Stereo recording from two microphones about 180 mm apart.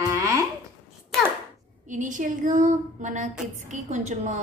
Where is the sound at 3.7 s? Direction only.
40° right (ahead or behind).